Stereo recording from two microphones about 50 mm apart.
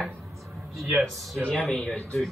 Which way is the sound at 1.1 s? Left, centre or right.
Centre.